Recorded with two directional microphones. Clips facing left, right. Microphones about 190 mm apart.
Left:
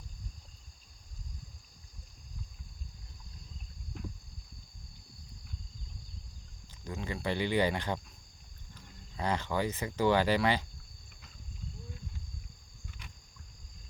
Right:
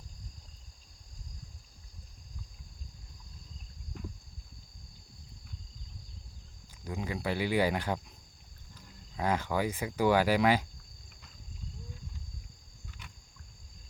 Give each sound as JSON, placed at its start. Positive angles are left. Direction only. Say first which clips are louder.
{"t": 6.8, "sound": "speech", "louder": "right 1 dB", "side_deg": -10}